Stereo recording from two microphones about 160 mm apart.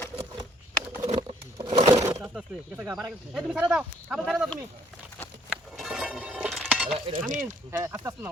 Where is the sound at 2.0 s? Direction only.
5° right (ahead or behind).